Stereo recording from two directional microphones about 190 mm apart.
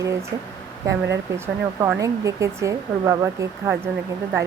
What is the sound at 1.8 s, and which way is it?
Speech, 15° right (ahead or behind).